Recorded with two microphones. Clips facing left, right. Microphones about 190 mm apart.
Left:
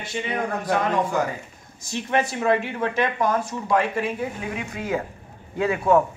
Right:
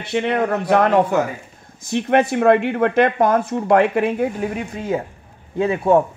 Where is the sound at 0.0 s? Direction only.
65° right (ahead or behind).